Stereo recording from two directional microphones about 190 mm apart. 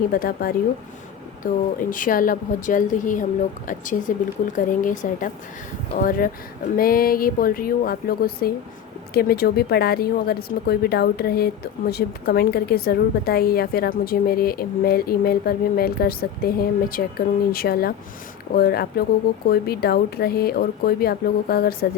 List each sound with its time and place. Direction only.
0.1 s speech: 50° left (ahead or behind)
1.8 s speech: 45° left (ahead or behind)